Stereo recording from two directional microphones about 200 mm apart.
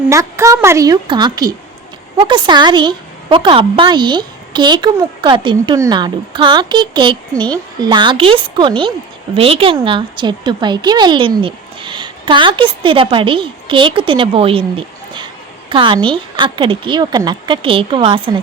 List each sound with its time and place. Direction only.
0.1 s a woman's voice: 15° right (ahead or behind)